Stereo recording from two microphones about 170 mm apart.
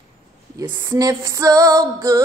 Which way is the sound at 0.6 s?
20° right (ahead or behind).